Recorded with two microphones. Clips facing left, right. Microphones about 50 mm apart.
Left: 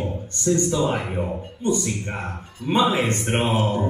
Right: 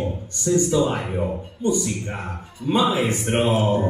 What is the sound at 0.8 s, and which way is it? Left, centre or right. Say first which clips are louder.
Speech: even; centre.